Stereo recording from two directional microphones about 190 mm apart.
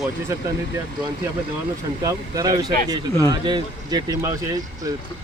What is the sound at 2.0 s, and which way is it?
Speech, 20° right (ahead or behind).